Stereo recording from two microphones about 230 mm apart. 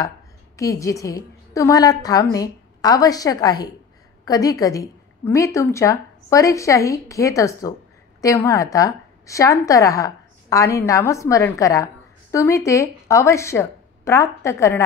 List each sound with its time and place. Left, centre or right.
0.6 s a woman's voice: centre